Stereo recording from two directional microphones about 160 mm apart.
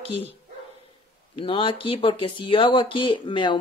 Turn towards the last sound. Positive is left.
turn(degrees=30)  # may be behind; listen again after turning